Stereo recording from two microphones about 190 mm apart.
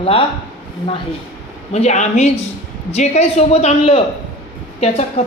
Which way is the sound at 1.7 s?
35° left (ahead or behind).